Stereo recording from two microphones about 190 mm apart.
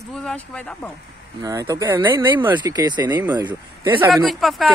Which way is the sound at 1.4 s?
15° right (ahead or behind).